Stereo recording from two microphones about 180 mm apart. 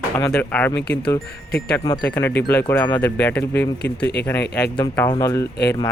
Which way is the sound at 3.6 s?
70° left (ahead or behind).